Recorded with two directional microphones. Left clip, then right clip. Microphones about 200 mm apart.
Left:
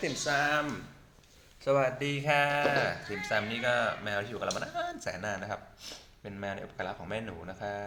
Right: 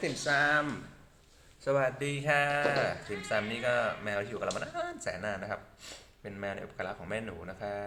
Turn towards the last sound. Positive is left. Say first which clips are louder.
# even
turn(degrees=-5)  # may be behind; listen again after turning